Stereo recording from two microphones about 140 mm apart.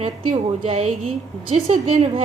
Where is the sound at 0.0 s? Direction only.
40° right (ahead or behind).